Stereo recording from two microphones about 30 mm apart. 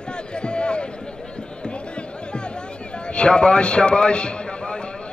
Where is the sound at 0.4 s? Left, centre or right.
Left.